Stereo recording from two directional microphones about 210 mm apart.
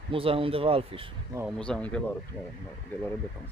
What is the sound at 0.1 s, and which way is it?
Speech, 25° right (ahead or behind).